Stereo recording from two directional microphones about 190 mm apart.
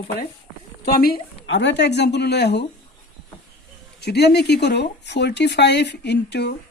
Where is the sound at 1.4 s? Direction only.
75° left (ahead or behind).